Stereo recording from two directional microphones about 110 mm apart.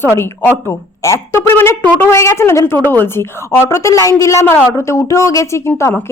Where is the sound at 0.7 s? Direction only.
25° left (ahead or behind).